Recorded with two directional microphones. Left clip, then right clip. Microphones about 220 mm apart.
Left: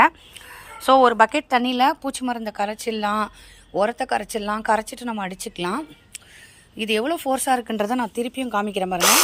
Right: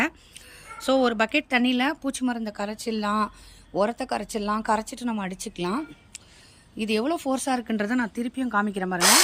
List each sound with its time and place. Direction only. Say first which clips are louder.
0.0 s a woman's voice: left 11 dB; 10° right (ahead or behind)